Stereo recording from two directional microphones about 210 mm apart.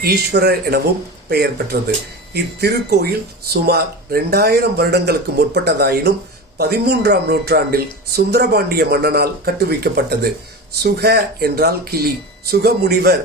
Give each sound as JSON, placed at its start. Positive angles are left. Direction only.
{"t": 0.0, "sound": "speech", "side_deg": -50}